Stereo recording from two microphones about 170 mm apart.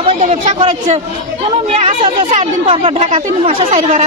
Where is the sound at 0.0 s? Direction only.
30° right (ahead or behind).